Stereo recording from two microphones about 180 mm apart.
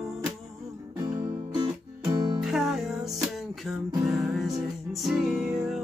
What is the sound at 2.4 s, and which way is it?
Music, centre (ahead or behind).